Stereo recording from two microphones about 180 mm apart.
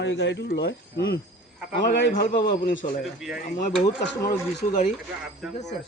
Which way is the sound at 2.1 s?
50° left (ahead or behind).